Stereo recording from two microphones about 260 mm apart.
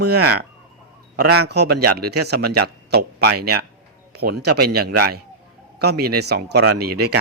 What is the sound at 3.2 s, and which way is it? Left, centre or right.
Speech, right.